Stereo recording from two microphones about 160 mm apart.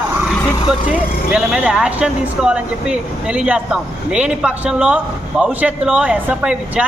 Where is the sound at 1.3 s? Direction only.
5° right (ahead or behind).